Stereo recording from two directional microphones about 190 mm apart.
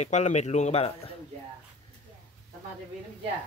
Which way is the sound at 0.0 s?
35° left (ahead or behind).